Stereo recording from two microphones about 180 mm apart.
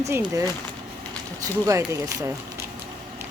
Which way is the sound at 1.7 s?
20° right (ahead or behind).